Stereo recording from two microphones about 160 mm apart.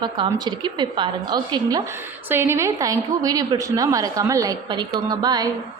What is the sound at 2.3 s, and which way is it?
A woman's voice, 15° right (ahead or behind).